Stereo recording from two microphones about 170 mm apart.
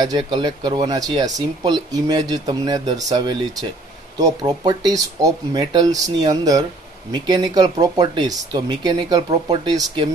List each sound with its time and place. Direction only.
0.0 s speech: 25° right (ahead or behind)